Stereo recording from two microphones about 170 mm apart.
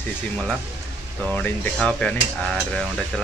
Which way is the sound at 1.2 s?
10° left (ahead or behind).